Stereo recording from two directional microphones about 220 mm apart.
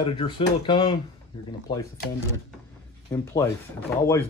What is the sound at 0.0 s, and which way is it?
Speech, 25° left (ahead or behind).